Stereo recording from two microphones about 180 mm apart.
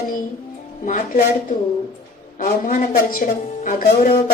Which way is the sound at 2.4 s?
50° left (ahead or behind).